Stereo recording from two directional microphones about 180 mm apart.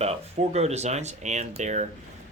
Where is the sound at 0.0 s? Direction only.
35° right (ahead or behind).